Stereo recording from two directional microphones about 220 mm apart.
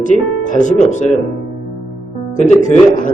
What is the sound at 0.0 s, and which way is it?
Speech, 35° left (ahead or behind).